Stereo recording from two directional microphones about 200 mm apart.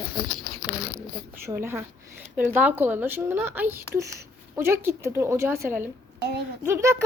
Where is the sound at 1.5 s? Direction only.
10° right (ahead or behind).